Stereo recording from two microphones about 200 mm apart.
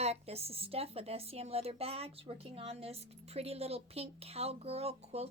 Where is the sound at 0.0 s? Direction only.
30° right (ahead or behind).